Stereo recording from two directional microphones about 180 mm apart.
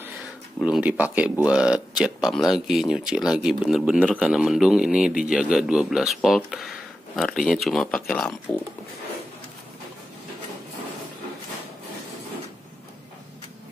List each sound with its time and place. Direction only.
0.6 s a man's voice: 5° right (ahead or behind)